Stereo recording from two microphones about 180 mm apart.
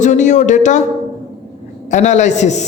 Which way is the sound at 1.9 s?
40° left (ahead or behind).